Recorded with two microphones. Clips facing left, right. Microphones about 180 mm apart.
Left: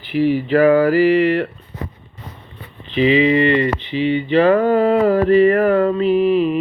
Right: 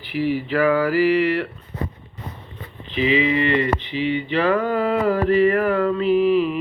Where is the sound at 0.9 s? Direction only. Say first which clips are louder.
Left 4 dB; 25° left (ahead or behind).